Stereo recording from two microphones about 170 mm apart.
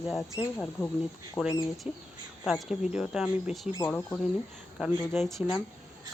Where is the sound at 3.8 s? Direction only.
10° left (ahead or behind).